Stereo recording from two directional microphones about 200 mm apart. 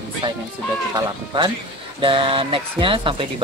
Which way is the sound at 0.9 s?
20° right (ahead or behind).